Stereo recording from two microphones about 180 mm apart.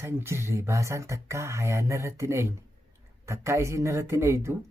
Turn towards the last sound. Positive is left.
turn(degrees=-15)  # may be behind; listen again after turning